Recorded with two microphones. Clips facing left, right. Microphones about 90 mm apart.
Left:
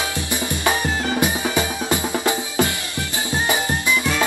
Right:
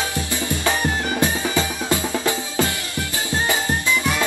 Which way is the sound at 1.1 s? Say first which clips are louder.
Left 2 dB; 15° left (ahead or behind).